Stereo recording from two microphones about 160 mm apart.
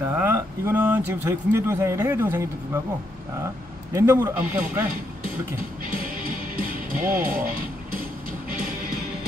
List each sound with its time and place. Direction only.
0.1 s speech: 10° right (ahead or behind)
3.9 s speech: 15° right (ahead or behind)
6.5 s music: 60° right (ahead or behind)